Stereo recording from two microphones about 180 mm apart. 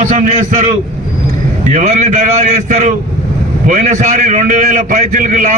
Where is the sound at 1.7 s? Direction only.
40° right (ahead or behind).